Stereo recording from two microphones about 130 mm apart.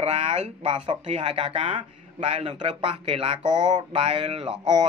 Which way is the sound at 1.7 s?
60° right (ahead or behind).